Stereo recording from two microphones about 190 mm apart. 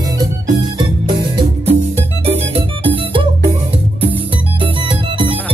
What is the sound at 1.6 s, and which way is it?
Music, 30° right (ahead or behind).